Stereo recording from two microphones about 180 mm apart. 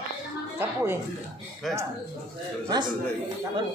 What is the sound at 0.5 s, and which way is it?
Music, 10° right (ahead or behind).